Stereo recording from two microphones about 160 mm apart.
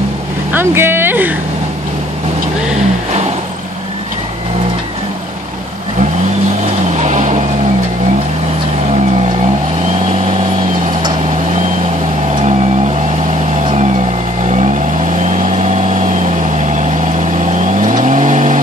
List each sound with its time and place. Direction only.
0.5 s speech: 15° right (ahead or behind)
7.0 s vehicle: 50° right (ahead or behind)
17.8 s vehicle: 50° right (ahead or behind)